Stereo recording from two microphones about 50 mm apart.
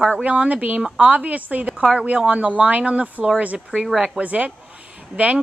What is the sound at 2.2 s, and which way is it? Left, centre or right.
A woman's voice, right.